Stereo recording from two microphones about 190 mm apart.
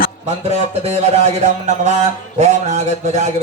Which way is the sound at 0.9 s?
35° right (ahead or behind).